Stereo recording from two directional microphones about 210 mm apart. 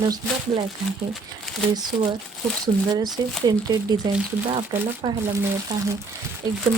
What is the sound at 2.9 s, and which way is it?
Speech, 20° right (ahead or behind).